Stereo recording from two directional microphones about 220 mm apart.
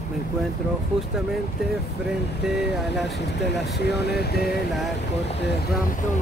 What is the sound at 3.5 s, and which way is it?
Speech, 50° left (ahead or behind).